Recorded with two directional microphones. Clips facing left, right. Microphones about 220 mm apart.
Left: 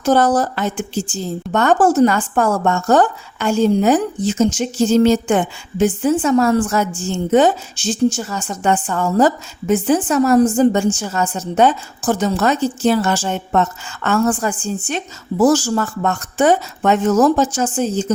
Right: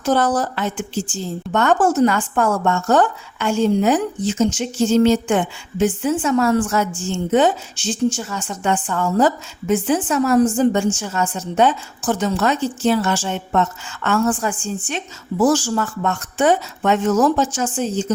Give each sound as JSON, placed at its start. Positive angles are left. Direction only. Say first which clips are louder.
{"t": 0.0, "sound": "a woman's voice", "louder": "left 3 dB", "side_deg": 40}